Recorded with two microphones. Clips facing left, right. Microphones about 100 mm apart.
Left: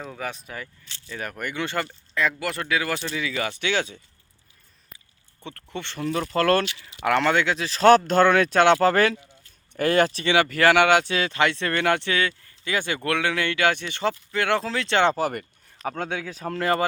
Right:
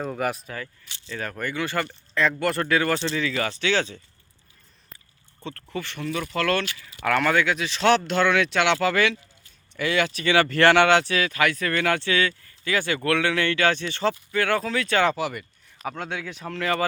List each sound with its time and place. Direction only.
0.0 s speech: 5° right (ahead or behind)
0.4 s speech: 15° left (ahead or behind)
2.4 s speech: centre (ahead or behind)
5.4 s speech: 15° left (ahead or behind); by 6.7 s 40° left (ahead or behind)
7.0 s speech: 25° left (ahead or behind)
10.2 s speech: 15° left (ahead or behind)
15.1 s speech: 45° left (ahead or behind)